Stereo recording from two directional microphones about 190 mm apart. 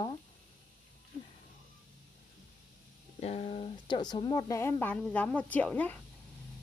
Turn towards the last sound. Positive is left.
turn(degrees=10)  # may be behind; listen again after turning